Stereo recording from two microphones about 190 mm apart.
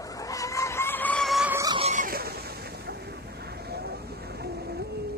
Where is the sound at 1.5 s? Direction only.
20° right (ahead or behind).